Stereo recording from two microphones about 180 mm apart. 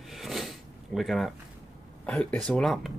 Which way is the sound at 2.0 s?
5° left (ahead or behind).